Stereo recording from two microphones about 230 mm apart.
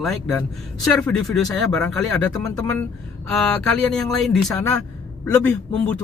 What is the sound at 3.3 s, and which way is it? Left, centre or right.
Speech, centre.